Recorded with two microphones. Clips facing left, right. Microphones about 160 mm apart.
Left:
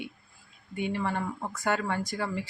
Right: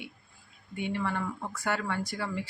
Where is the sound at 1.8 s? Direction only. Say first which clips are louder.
Left 2 dB; 40° left (ahead or behind).